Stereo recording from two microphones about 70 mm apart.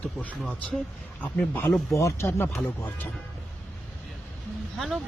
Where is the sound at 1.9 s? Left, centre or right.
Left.